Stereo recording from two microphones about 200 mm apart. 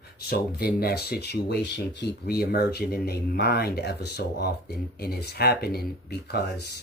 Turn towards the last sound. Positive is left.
turn(degrees=55)  # may be behind; listen again after turning